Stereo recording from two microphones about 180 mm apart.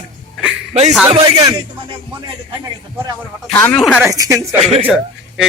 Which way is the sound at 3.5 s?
10° left (ahead or behind).